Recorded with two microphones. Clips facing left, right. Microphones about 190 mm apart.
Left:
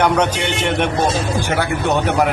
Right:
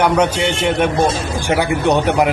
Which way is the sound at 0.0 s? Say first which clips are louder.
Right 2 dB; 10° right (ahead or behind).